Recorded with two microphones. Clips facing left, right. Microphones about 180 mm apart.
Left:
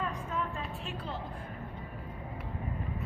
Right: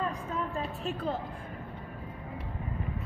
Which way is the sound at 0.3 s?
40° right (ahead or behind).